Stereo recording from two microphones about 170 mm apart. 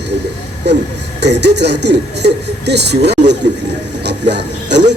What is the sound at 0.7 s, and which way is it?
A man's voice, 85° right.